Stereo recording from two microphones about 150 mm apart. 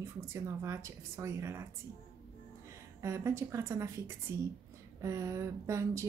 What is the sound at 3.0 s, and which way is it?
A woman's voice, 20° right (ahead or behind).